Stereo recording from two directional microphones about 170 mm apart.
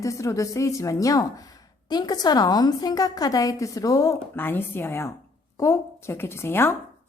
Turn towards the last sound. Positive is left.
turn(degrees=15)  # may be behind; listen again after turning